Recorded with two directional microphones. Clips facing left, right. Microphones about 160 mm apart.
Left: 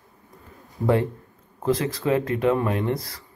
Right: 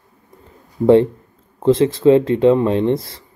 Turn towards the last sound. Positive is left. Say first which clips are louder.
# right 8 dB
turn(degrees=-25)  # may be behind; listen again after turning